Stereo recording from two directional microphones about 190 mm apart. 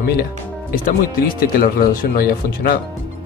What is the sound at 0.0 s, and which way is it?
Speech, 55° left (ahead or behind).